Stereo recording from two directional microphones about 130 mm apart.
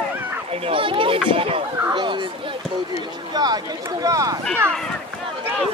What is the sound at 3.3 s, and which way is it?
Speech, 30° right (ahead or behind).